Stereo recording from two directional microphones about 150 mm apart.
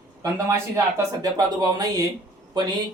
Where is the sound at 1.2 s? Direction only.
25° right (ahead or behind).